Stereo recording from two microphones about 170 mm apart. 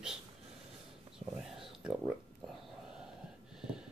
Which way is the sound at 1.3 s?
5° right (ahead or behind).